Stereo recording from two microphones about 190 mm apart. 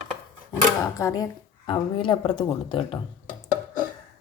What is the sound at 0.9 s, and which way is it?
A woman's voice, 20° left (ahead or behind).